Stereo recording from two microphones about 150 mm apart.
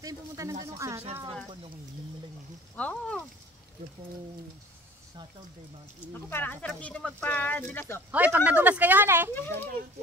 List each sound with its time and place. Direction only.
0.0 s speech: 20° right (ahead or behind)
2.7 s a sound: 10° left (ahead or behind)
6.1 s speech: 15° left (ahead or behind)
8.1 s speech: 10° right (ahead or behind)
9.3 s speech: 15° left (ahead or behind)